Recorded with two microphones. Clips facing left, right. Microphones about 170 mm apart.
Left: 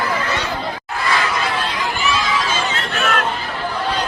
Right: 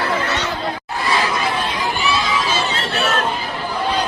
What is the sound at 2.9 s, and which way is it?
Chatter, 30° right (ahead or behind).